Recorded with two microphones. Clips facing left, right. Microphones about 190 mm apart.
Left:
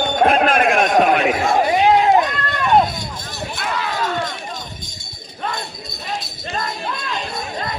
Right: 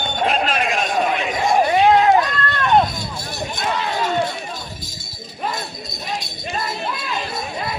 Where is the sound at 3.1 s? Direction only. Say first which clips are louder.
Right 2 dB; 15° right (ahead or behind).